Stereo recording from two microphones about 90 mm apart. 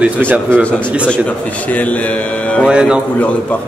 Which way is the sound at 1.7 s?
15° left (ahead or behind).